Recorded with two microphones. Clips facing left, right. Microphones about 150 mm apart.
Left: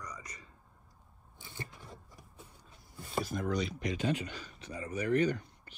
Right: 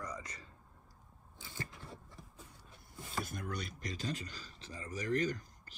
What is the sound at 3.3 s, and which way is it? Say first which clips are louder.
Speech: left 9 dB; 55° right (ahead or behind).